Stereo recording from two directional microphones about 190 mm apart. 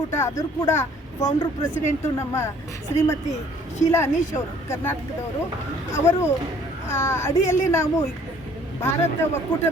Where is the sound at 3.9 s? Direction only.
15° left (ahead or behind).